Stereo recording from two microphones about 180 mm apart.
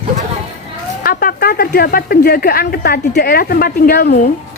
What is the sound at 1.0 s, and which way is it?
Speech, 55° left (ahead or behind).